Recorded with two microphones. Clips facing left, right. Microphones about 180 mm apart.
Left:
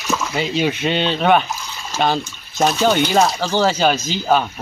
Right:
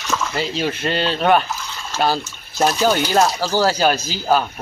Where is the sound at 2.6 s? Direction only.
5° right (ahead or behind).